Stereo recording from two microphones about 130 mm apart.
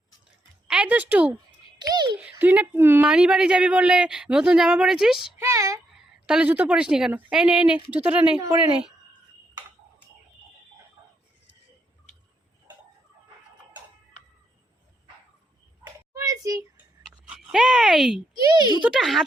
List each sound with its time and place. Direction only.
0.7 s a woman's voice: 10° right (ahead or behind)
1.8 s speech: 35° right (ahead or behind)
2.4 s a woman's voice: 15° right (ahead or behind)
5.4 s child singing: 25° right (ahead or behind)
6.2 s a woman's voice: 10° right (ahead or behind)
16.1 s a sound: 25° right (ahead or behind)
16.7 s a sound: 5° right (ahead or behind)
18.3 s speech: 30° right (ahead or behind)
18.8 s speech: centre (ahead or behind)